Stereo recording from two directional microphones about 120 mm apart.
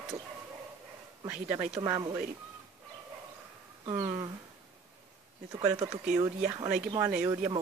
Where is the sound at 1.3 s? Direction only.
15° right (ahead or behind).